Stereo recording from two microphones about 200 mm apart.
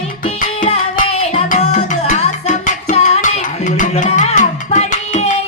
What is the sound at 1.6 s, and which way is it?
Music, 30° left (ahead or behind).